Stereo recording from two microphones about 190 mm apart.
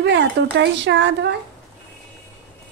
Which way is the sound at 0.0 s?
65° right (ahead or behind).